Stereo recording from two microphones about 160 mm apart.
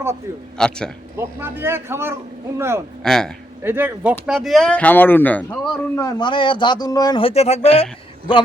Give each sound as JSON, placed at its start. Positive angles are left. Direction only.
{"t": 0.6, "sound": "speech", "side_deg": 5}
{"t": 1.1, "sound": "a man's voice", "side_deg": -15}
{"t": 3.0, "sound": "speech", "side_deg": 5}
{"t": 3.6, "sound": "a man's voice", "side_deg": -15}
{"t": 4.3, "sound": "speech", "side_deg": 0}
{"t": 6.1, "sound": "a man's voice", "side_deg": 30}